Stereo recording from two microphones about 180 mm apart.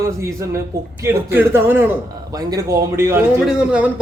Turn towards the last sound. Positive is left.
turn(degrees=-5)  # may be behind; listen again after turning